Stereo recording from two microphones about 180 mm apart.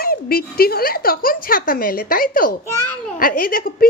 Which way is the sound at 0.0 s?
55° left (ahead or behind).